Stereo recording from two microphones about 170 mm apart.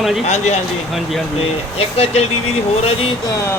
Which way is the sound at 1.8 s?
35° left (ahead or behind).